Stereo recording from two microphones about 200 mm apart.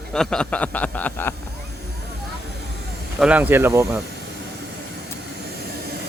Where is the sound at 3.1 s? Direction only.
5° right (ahead or behind).